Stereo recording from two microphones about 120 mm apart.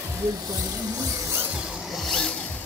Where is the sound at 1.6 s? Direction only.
Centre (ahead or behind).